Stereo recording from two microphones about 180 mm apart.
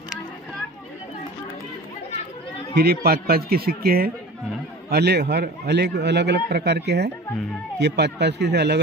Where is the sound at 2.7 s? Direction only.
60° right (ahead or behind).